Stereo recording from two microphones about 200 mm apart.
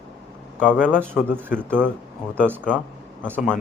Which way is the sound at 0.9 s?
10° right (ahead or behind).